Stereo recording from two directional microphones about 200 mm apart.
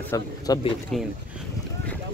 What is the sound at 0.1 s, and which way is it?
Speech, 20° left (ahead or behind).